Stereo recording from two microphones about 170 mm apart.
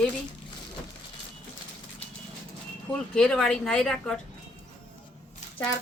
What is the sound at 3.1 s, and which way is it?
Speech, 5° left (ahead or behind).